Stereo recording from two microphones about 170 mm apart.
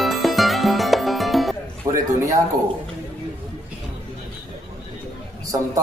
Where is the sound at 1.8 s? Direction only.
20° right (ahead or behind).